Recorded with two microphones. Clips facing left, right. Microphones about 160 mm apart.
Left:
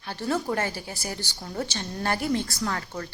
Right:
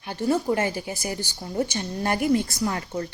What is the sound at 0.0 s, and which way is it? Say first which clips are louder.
A woman's voice: right 4 dB; 15° right (ahead or behind).